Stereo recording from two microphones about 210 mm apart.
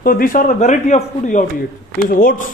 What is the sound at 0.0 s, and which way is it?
A man's voice, 45° left (ahead or behind).